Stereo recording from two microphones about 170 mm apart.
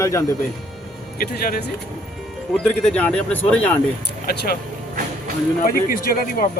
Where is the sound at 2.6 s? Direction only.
5° left (ahead or behind).